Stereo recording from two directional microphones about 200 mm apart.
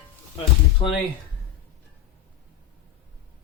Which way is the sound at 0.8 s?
25° left (ahead or behind).